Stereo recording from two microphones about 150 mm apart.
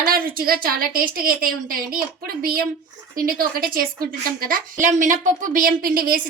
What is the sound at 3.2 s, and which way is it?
A woman's voice, 70° right (ahead or behind).